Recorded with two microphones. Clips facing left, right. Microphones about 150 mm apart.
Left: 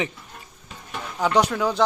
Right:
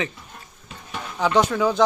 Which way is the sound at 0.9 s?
Centre (ahead or behind).